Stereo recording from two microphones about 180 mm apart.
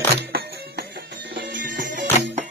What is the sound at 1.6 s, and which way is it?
Music, 50° right (ahead or behind).